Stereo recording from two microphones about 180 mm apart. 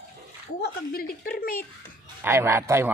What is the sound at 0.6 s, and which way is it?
Speech, 55° left (ahead or behind).